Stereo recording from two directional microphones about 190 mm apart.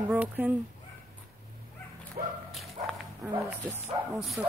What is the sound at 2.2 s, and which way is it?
Bow-wow, 45° right (ahead or behind).